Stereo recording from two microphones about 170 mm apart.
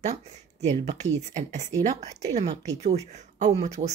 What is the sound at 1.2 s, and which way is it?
Speech, 45° right (ahead or behind).